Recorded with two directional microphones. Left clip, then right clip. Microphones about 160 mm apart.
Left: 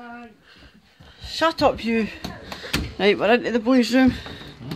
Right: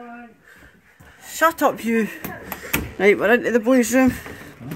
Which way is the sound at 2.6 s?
5° left (ahead or behind).